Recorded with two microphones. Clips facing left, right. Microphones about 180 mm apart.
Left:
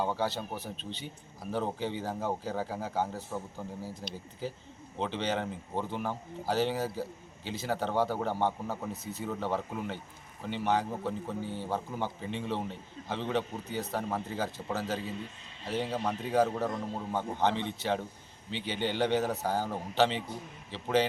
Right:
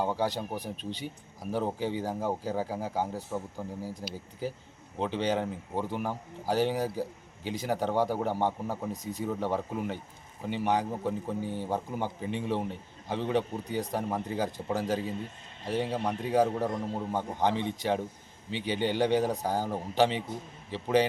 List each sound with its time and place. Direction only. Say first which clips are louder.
0.0 s speech: right 2 dB; 15° right (ahead or behind)
15.0 s a man's voice: right 3 dB; 50° right (ahead or behind)
15.6 s speech: right 2 dB; 10° right (ahead or behind)